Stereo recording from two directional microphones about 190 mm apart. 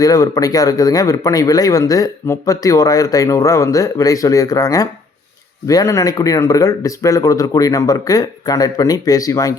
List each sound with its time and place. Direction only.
0.0 s speech: 20° left (ahead or behind)